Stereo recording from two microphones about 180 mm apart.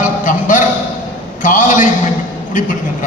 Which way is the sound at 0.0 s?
45° left (ahead or behind).